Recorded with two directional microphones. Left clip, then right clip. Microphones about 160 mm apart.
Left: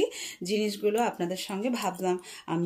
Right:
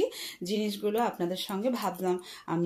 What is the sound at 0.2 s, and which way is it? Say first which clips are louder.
Speech: left 3 dB; 20° left (ahead or behind).